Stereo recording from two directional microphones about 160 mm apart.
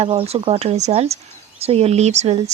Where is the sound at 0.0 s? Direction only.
35° right (ahead or behind).